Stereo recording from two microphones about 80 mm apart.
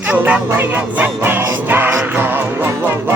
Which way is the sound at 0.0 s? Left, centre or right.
Right.